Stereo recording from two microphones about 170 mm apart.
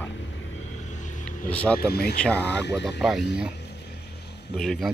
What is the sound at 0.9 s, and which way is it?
Vehicle, 45° left (ahead or behind).